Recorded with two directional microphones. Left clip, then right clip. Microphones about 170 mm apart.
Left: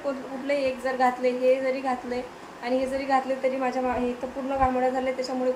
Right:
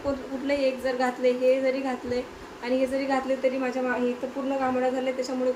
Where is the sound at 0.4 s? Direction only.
Centre (ahead or behind).